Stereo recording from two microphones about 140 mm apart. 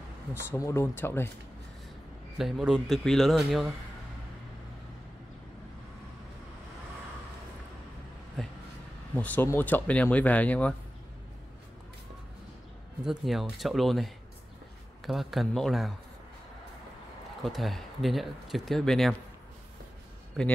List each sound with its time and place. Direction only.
0.3 s speech: 20° left (ahead or behind)
2.3 s speech: centre (ahead or behind)
8.4 s a sound: 5° left (ahead or behind)
9.1 s speech: 10° left (ahead or behind)
13.0 s speech: centre (ahead or behind)
17.4 s speech: centre (ahead or behind)
20.4 s speech: centre (ahead or behind)